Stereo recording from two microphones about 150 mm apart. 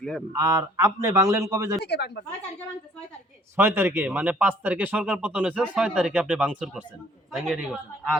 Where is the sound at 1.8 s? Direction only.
90° left.